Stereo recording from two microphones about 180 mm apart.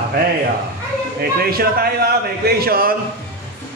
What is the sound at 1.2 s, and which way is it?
Speech, 55° right (ahead or behind).